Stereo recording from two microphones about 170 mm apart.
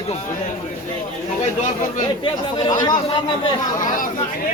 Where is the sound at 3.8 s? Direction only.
50° left (ahead or behind).